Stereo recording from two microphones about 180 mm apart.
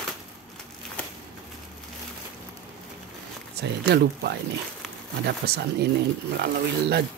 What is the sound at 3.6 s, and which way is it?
Speech, 65° right (ahead or behind).